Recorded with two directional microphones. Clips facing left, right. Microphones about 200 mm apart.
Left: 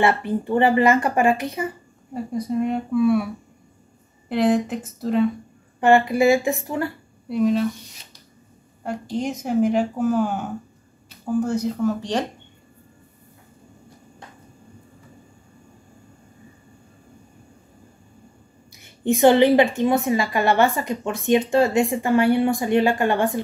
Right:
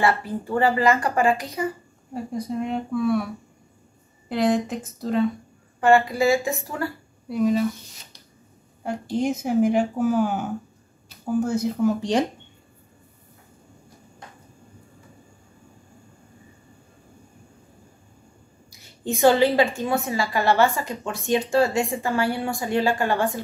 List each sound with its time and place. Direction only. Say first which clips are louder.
0.2 s speech: left 3 dB; 25° left (ahead or behind)
2.5 s speech: left 5 dB; 5° left (ahead or behind)
4.3 s speech: left 2 dB; centre (ahead or behind)
5.9 s a woman's voice: left 3 dB; 20° left (ahead or behind)
7.2 s speech: left 1 dB; centre (ahead or behind)
8.8 s speech: right 2 dB; 5° right (ahead or behind)
18.8 s a woman's voice: left 4 dB; 15° left (ahead or behind)